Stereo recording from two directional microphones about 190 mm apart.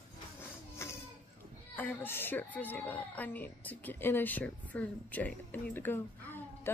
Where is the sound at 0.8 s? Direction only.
15° left (ahead or behind).